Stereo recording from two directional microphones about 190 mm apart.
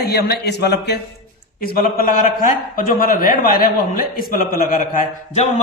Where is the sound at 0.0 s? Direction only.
55° left (ahead or behind).